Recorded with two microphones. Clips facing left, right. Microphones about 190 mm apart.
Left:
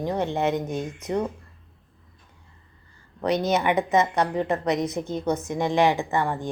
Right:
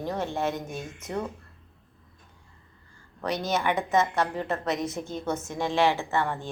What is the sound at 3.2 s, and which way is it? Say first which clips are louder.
A woman's voice: left 5 dB; 20° left (ahead or behind).